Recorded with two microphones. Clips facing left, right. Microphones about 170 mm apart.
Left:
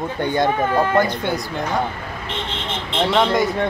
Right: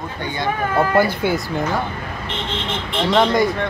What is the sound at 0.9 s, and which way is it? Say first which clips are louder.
Speech: right 2 dB; 5° right (ahead or behind).